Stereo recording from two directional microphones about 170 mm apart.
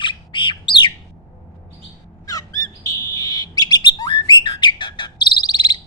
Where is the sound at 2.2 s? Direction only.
20° left (ahead or behind).